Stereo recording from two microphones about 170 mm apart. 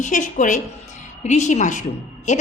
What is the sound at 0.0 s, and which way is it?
A woman's voice, 45° left (ahead or behind).